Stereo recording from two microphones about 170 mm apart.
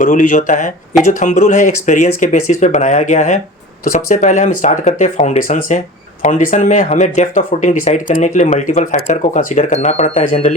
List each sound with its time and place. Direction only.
0.0 s speech: 50° left (ahead or behind)